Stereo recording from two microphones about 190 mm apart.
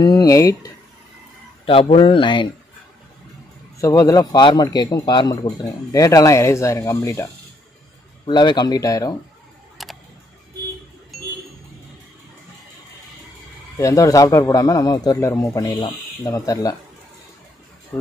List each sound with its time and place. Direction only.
0.0 s a man's voice: 20° left (ahead or behind)
1.7 s speech: 30° left (ahead or behind)
3.7 s a man's voice: 15° left (ahead or behind)
8.3 s speech: 20° left (ahead or behind)
9.8 s tick: centre (ahead or behind)
13.7 s a man's voice: 15° left (ahead or behind)